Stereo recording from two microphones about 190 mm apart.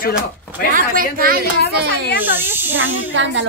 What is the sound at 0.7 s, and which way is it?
Speech, 50° right (ahead or behind).